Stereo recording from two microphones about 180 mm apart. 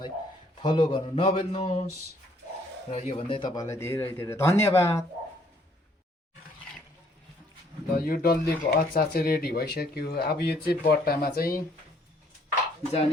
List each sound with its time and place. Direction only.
0.6 s speech: 25° left (ahead or behind)
2.9 s speech: 35° left (ahead or behind); by 5.0 s 15° left (ahead or behind)
7.9 s speech: 55° left (ahead or behind)